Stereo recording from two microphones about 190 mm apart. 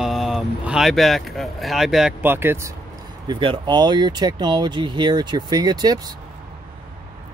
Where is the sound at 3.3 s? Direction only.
25° right (ahead or behind).